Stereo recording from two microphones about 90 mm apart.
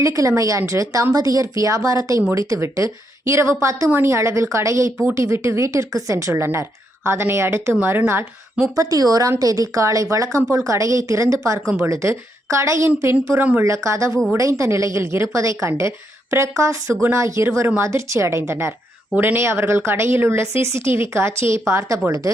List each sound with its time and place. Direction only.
0.0 s speech: 35° right (ahead or behind)
8.7 s a woman's voice: 40° right (ahead or behind)
13.4 s speech: 15° right (ahead or behind)
13.7 s speech: 35° right (ahead or behind)